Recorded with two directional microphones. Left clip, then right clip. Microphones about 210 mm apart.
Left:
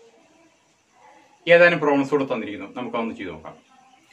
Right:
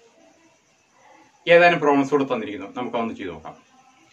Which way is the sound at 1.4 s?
10° right (ahead or behind).